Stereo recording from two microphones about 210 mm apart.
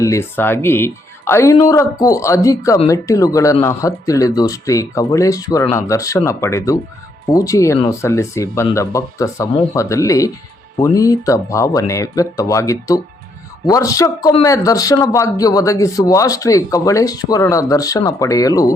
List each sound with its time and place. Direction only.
0.0 s a man's voice: 15° left (ahead or behind)